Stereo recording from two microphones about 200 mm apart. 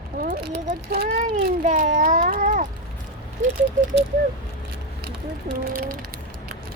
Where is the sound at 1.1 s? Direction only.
40° right (ahead or behind).